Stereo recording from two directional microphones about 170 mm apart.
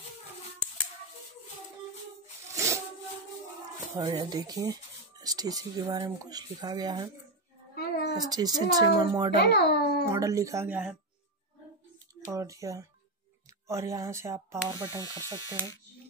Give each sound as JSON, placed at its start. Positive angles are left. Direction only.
{"t": 2.4, "sound": "a sound", "side_deg": -15}
{"t": 3.8, "sound": "speech", "side_deg": -20}
{"t": 7.7, "sound": "a sound", "side_deg": 65}
{"t": 8.2, "sound": "speech", "side_deg": -20}
{"t": 9.4, "sound": "a child's voice", "side_deg": 75}
{"t": 10.0, "sound": "speech", "side_deg": -20}
{"t": 12.3, "sound": "speech", "side_deg": -20}